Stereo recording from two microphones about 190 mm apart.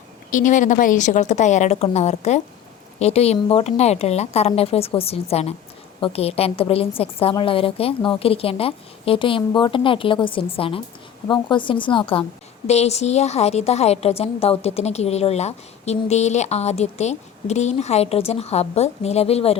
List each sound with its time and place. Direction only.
0.3 s a woman's voice: 45° left (ahead or behind)